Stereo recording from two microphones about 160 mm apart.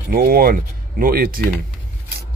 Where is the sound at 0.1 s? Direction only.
70° right (ahead or behind).